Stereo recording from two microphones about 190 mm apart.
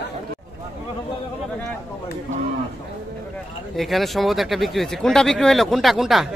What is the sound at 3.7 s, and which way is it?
Speech, centre (ahead or behind).